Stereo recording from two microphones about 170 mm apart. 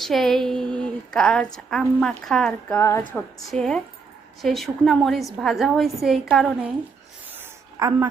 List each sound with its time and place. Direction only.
0.0 s a woman's voice: centre (ahead or behind)
0.8 s a sound: 5° left (ahead or behind)
1.5 s a woman's voice: 5° left (ahead or behind)
2.7 s a woman's voice: 15° left (ahead or behind)
3.2 s a woman's voice: centre (ahead or behind)
7.3 s a sound: 15° right (ahead or behind)